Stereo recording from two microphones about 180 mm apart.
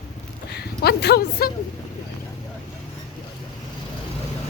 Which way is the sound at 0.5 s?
65° left (ahead or behind).